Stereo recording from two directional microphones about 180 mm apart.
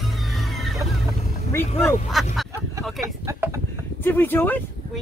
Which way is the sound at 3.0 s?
15° right (ahead or behind).